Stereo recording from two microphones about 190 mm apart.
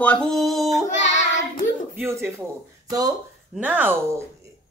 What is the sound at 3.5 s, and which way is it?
Speech, 10° right (ahead or behind).